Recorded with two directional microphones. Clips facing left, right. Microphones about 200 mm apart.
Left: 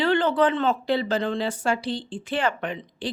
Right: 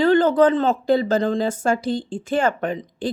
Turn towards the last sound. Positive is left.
turn(degrees=-45)  # may be behind; listen again after turning